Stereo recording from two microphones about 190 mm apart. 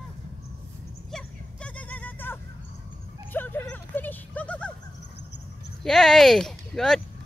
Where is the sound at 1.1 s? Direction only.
5° left (ahead or behind).